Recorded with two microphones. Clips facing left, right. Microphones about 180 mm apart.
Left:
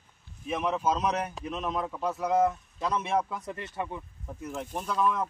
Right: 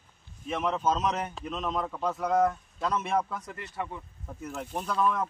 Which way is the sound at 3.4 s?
25° left (ahead or behind).